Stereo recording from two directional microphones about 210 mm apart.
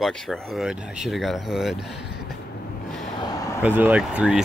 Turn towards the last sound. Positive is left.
turn(degrees=-5)  # may be behind; listen again after turning